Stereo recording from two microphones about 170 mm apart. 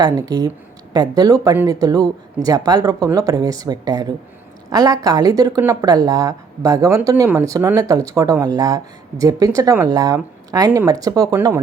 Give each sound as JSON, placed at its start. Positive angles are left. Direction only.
{"t": 0.0, "sound": "speech", "side_deg": -20}